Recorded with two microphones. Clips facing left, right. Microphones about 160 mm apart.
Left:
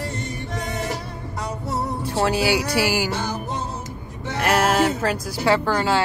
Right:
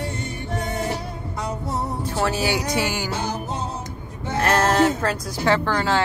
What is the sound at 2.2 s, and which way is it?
Speech, 10° left (ahead or behind).